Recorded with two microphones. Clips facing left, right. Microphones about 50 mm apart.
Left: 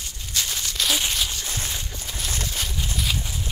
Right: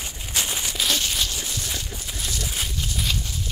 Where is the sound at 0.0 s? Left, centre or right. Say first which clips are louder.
Right 2 dB; centre.